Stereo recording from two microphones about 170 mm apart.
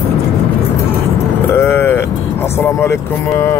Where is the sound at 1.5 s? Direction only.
15° left (ahead or behind).